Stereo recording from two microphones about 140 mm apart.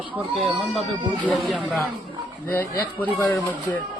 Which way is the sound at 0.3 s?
Centre (ahead or behind).